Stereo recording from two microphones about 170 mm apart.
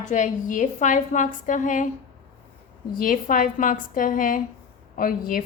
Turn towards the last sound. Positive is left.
turn(degrees=55)  # may be behind; listen again after turning